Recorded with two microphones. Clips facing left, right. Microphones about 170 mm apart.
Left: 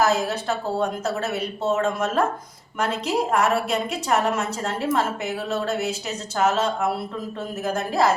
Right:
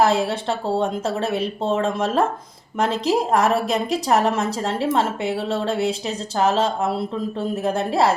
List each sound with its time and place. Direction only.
0.0 s a woman's voice: 30° right (ahead or behind)